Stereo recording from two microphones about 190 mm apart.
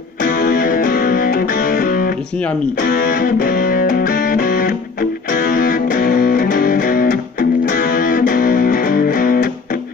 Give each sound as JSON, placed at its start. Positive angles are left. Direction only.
{"t": 0.2, "sound": "music", "side_deg": 50}